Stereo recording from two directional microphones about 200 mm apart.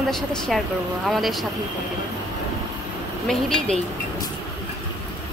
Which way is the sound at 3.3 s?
Centre (ahead or behind).